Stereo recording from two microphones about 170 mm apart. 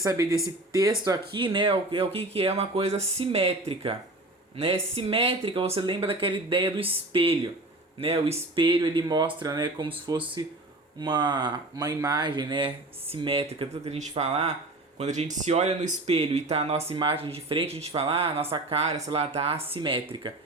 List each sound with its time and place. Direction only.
0.0 s speech: 20° right (ahead or behind)